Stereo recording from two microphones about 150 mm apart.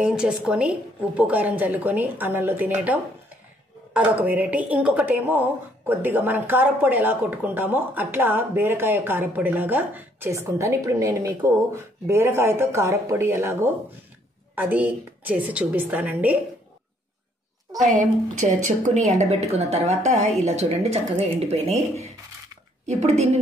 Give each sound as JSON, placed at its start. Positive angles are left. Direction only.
{"t": 0.0, "sound": "a woman's voice", "side_deg": -5}
{"t": 17.8, "sound": "a woman's voice", "side_deg": -55}